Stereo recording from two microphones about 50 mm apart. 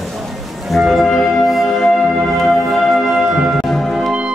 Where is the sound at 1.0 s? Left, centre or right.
Centre.